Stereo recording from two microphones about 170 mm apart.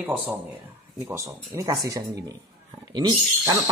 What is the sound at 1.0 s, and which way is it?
Speech, 15° right (ahead or behind).